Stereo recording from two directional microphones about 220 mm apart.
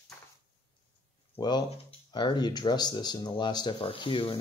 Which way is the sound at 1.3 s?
20° left (ahead or behind).